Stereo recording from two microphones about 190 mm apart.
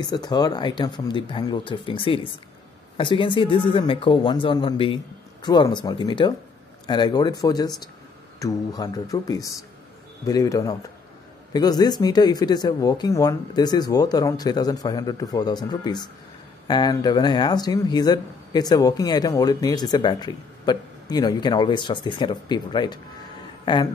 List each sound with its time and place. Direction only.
0.0 s speech: 20° left (ahead or behind)